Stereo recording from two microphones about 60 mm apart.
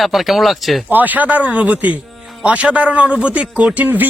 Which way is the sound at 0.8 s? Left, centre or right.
Right.